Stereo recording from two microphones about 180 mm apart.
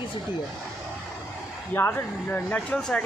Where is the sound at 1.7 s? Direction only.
10° left (ahead or behind).